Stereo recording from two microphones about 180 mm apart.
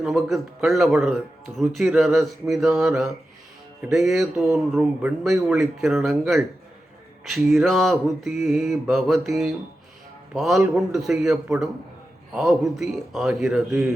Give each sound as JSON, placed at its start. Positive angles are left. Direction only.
{"t": 0.0, "sound": "a man's voice", "side_deg": 0}
{"t": 3.8, "sound": "speech", "side_deg": -15}
{"t": 4.0, "sound": "a man's voice", "side_deg": 0}